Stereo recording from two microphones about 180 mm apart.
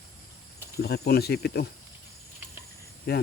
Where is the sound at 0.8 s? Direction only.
60° left (ahead or behind).